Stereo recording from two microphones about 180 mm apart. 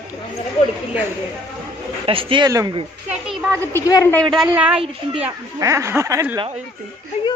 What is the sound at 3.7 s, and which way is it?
Speech, 15° left (ahead or behind).